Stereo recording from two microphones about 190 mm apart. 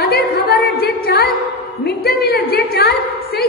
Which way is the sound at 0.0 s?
55° left (ahead or behind).